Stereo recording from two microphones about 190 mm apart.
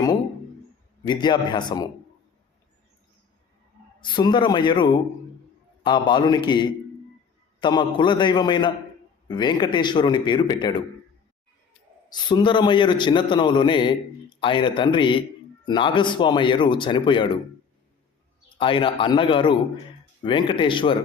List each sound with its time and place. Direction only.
1.0 s a man's voice: 25° left (ahead or behind)
4.0 s a man's voice: 25° left (ahead or behind)
12.0 s a man's voice: 25° left (ahead or behind)
18.4 s a man's voice: 25° left (ahead or behind)